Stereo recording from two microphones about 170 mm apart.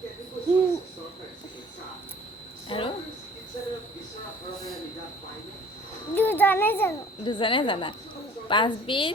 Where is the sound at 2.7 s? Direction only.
30° left (ahead or behind).